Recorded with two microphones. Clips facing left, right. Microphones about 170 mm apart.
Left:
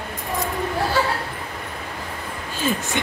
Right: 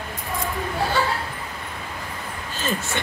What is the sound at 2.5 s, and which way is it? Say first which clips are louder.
Speech: left 3 dB; 15° left (ahead or behind).